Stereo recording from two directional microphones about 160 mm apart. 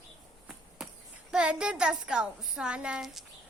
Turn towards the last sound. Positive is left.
turn(degrees=-5)  # may be behind; listen again after turning